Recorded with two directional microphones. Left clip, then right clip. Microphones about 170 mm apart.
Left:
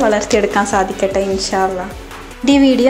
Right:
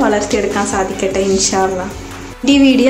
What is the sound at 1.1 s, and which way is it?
A woman's voice, 15° left (ahead or behind).